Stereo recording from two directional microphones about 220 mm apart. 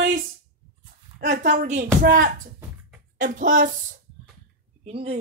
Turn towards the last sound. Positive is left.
turn(degrees=-25)  # may be behind; listen again after turning